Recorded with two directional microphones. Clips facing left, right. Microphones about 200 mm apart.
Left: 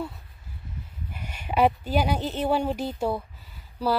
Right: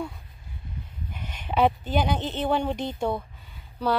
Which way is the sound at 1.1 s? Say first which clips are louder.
Even; 10° left (ahead or behind).